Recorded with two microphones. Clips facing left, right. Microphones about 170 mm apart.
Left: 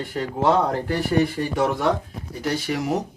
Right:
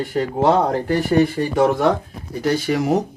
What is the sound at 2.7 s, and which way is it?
Speech, 90° right.